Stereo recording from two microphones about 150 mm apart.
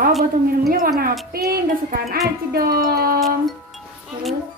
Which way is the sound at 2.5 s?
90° right.